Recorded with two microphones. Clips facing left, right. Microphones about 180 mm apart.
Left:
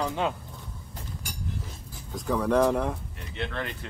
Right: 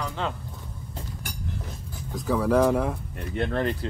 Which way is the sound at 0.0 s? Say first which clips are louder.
Left 3 dB; 15° left (ahead or behind).